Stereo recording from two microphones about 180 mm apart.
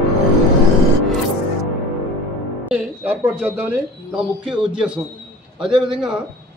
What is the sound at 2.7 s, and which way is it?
Speech, 5° right (ahead or behind).